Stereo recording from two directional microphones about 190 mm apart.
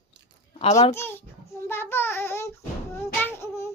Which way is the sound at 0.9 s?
15° left (ahead or behind).